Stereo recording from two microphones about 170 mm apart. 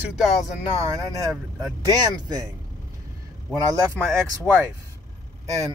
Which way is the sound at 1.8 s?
20° right (ahead or behind).